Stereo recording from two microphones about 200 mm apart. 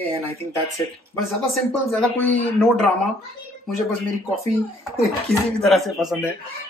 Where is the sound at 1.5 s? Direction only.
5° left (ahead or behind).